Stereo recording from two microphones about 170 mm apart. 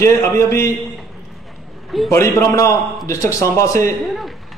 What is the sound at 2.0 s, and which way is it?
A man's voice, 15° left (ahead or behind).